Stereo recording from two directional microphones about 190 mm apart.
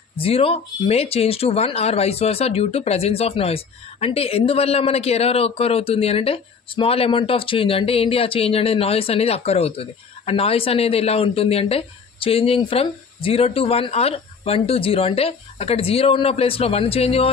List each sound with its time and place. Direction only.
0.2 s speech: 30° left (ahead or behind)